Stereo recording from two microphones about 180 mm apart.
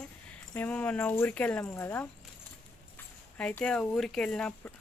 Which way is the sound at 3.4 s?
5° left (ahead or behind).